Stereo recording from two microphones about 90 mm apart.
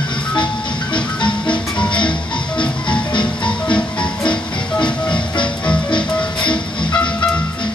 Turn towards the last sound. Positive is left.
turn(degrees=10)  # may be behind; listen again after turning